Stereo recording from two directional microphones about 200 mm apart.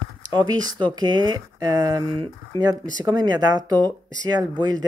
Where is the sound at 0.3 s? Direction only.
20° right (ahead or behind).